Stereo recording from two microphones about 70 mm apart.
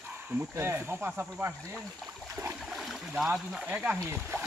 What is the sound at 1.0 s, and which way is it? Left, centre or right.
Speech, right.